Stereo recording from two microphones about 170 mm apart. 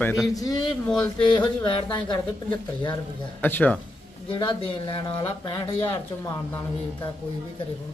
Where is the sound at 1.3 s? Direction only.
30° left (ahead or behind).